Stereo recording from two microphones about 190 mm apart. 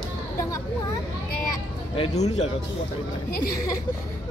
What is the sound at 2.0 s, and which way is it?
Speech, 35° left (ahead or behind).